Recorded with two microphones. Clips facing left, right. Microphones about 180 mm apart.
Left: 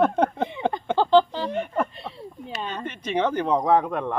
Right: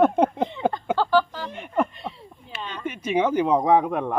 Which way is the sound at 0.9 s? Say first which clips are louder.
Left 7 dB; 25° left (ahead or behind).